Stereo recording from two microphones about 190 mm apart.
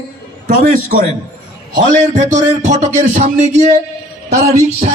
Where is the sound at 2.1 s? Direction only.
40° right (ahead or behind).